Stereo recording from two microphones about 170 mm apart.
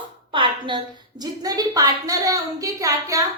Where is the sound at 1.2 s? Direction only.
20° right (ahead or behind).